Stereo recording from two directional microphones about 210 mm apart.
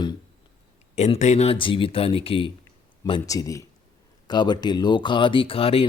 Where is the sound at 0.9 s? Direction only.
30° left (ahead or behind).